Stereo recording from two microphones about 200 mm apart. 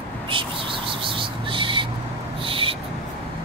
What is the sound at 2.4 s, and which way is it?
Owl, 25° right (ahead or behind).